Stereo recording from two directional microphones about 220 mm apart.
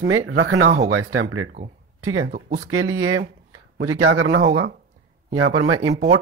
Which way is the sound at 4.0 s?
75° right (ahead or behind).